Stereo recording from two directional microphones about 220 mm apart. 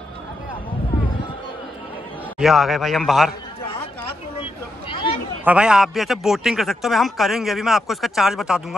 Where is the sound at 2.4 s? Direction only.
Centre (ahead or behind).